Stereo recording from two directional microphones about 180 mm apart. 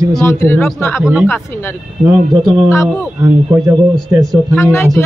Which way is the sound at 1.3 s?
10° left (ahead or behind).